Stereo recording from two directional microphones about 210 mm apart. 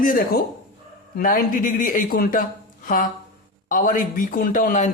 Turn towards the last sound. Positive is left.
turn(degrees=35)  # may be behind; listen again after turning